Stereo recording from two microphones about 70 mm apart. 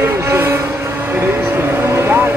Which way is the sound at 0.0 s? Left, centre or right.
Right.